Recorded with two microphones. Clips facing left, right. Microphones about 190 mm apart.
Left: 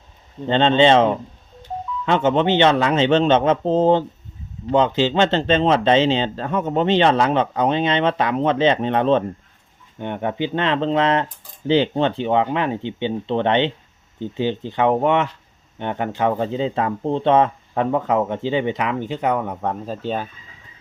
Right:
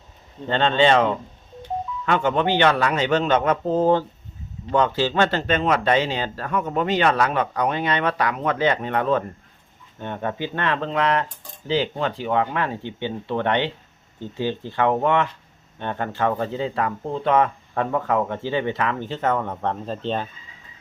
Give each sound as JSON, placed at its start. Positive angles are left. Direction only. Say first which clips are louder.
{"t": 0.4, "sound": "speech", "louder": "left 4 dB", "side_deg": 20}